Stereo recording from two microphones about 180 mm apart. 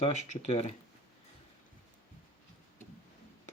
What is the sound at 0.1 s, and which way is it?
Speech, 40° left (ahead or behind).